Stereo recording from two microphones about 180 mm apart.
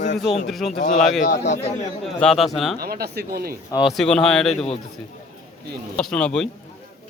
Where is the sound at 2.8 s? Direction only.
60° right (ahead or behind).